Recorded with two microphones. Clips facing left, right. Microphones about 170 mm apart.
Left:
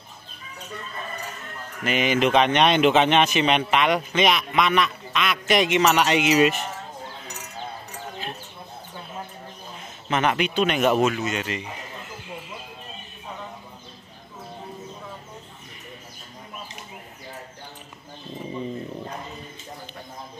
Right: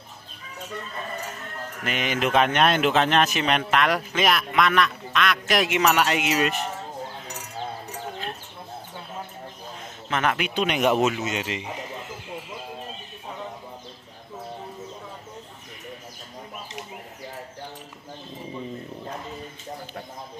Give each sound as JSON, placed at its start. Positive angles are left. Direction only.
{"t": 1.9, "sound": "a man's voice", "side_deg": 0}
{"t": 10.0, "sound": "a man's voice", "side_deg": 0}
{"t": 10.5, "sound": "speech", "side_deg": -15}